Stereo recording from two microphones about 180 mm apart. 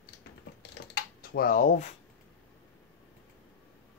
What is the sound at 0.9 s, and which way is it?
Speech, 55° left (ahead or behind).